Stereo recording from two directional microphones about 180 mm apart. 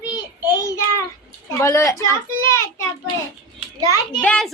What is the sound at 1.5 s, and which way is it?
Speech, 15° left (ahead or behind).